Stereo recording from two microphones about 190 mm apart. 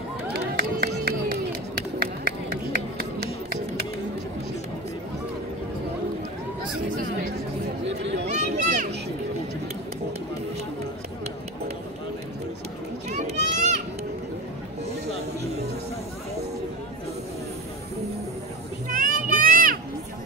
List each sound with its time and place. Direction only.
0.3 s music: 50° right (ahead or behind)
7.8 s chatter: 65° right (ahead or behind)
8.3 s a sound: 40° right (ahead or behind)
13.1 s children playing: 40° right (ahead or behind)
18.9 s music: 45° right (ahead or behind)